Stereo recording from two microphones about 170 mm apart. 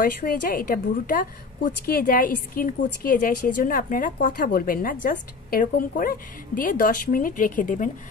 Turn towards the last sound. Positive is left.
turn(degrees=50)  # may be behind; listen again after turning